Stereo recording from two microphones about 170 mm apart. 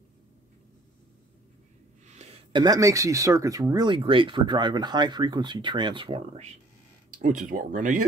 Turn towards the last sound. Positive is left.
turn(degrees=-50)  # may be behind; listen again after turning